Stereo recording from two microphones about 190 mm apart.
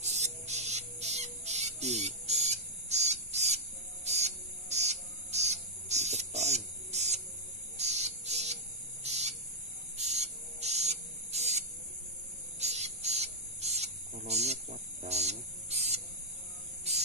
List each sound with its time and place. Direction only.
0.0 s music: 35° right (ahead or behind)
7.7 s bird: 35° right (ahead or behind)
9.0 s cricket: 35° right (ahead or behind)
9.9 s a sound: 35° right (ahead or behind)
12.5 s cricket: 35° right (ahead or behind)
14.2 s a sound: 35° right (ahead or behind)
16.9 s cricket: 35° right (ahead or behind)